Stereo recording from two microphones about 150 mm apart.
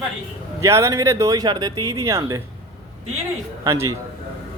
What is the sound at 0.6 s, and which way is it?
Speech, 20° right (ahead or behind).